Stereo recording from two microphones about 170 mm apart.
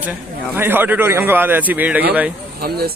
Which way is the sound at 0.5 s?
10° right (ahead or behind).